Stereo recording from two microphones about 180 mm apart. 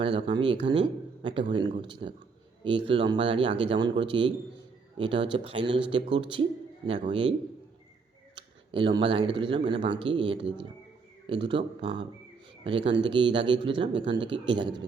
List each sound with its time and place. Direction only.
0.0 s speech: 30° right (ahead or behind)
8.4 s speech: 25° right (ahead or behind)